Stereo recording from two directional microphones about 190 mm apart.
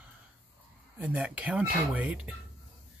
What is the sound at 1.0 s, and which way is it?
Speech, 10° right (ahead or behind).